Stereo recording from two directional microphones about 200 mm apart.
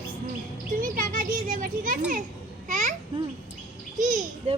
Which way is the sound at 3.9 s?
40° right (ahead or behind).